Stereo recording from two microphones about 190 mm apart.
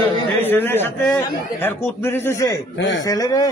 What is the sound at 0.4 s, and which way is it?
A man's voice, 10° left (ahead or behind).